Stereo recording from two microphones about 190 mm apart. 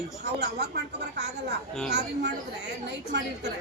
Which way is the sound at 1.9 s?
65° right (ahead or behind).